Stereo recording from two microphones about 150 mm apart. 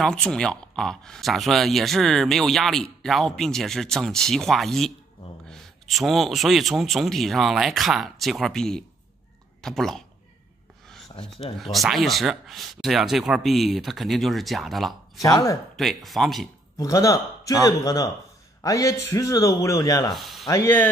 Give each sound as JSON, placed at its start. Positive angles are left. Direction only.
{"t": 0.0, "sound": "speech", "side_deg": 5}
{"t": 11.1, "sound": "speech", "side_deg": 35}
{"t": 11.7, "sound": "speech", "side_deg": 0}
{"t": 15.2, "sound": "a man's voice", "side_deg": 20}
{"t": 15.7, "sound": "speech", "side_deg": 0}
{"t": 16.7, "sound": "a man's voice", "side_deg": 20}
{"t": 20.2, "sound": "speech", "side_deg": 0}
{"t": 20.4, "sound": "speech", "side_deg": 20}